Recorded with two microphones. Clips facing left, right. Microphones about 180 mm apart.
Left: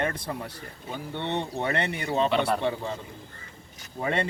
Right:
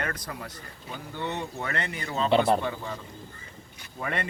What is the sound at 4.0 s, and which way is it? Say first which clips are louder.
Speech: left 4 dB; 25° left (ahead or behind).